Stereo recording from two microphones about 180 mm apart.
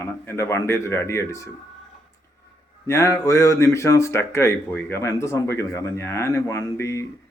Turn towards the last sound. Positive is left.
turn(degrees=15)  # may be behind; listen again after turning